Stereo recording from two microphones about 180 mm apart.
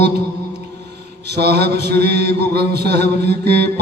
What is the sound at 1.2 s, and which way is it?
Mantra, 65° right (ahead or behind).